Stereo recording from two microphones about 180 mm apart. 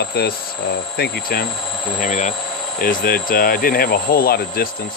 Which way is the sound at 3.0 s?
55° left (ahead or behind).